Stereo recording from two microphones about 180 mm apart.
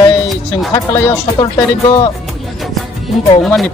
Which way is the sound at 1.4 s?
25° left (ahead or behind).